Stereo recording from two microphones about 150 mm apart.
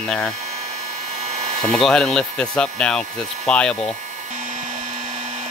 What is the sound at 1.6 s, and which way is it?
Speech, 5° left (ahead or behind).